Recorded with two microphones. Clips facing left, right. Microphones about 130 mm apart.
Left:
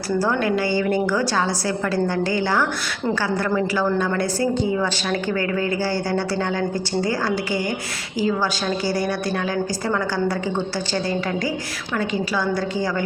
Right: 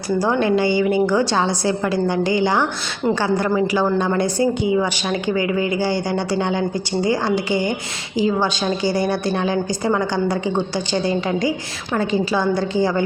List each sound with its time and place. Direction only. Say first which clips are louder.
0.2 s a woman's voice: right 4 dB; 20° right (ahead or behind)
1.0 s a woman's voice: right 3 dB; 25° right (ahead or behind)